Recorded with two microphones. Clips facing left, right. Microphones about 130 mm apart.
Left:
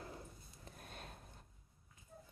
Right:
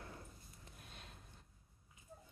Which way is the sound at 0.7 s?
45° left (ahead or behind).